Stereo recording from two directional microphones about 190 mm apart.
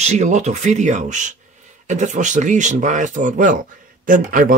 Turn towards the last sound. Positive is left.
turn(degrees=-45)  # may be behind; listen again after turning